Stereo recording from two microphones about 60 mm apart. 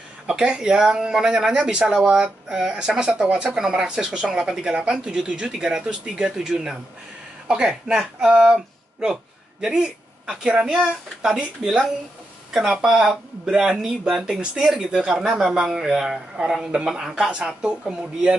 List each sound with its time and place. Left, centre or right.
0.3 s a woman's voice: centre